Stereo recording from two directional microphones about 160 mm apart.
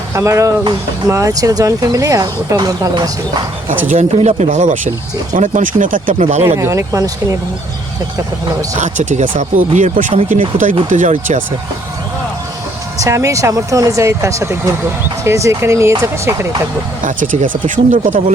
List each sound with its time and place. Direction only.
0.1 s speech: 20° right (ahead or behind)
3.8 s speech: 45° right (ahead or behind)
6.6 s speech: 20° right (ahead or behind)
8.8 s speech: 50° right (ahead or behind)
13.0 s speech: 20° right (ahead or behind)
17.0 s speech: 55° right (ahead or behind)